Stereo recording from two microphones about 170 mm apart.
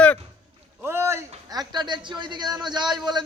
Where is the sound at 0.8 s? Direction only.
15° right (ahead or behind).